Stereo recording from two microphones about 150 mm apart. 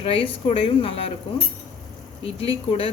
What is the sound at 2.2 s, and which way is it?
Speech, 40° left (ahead or behind).